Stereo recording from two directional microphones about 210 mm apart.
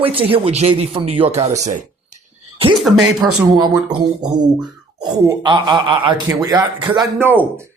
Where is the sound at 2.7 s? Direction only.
Centre (ahead or behind).